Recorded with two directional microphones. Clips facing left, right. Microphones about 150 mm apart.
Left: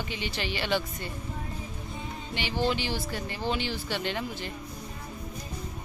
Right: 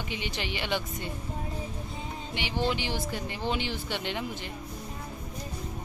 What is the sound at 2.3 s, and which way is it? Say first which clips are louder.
Speech: left 1 dB; 15° right (ahead or behind).